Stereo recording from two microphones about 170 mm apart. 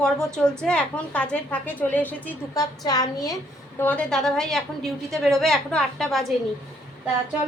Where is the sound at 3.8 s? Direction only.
5° left (ahead or behind).